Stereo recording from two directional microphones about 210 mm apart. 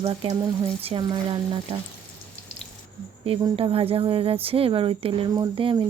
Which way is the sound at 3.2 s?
25° right (ahead or behind).